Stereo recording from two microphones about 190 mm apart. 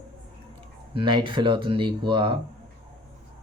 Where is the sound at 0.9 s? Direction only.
25° right (ahead or behind).